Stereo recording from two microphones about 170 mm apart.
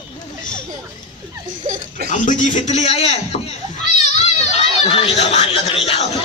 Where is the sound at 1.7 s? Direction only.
65° right (ahead or behind).